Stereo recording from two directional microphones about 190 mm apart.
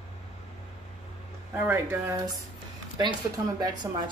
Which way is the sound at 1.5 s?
10° right (ahead or behind).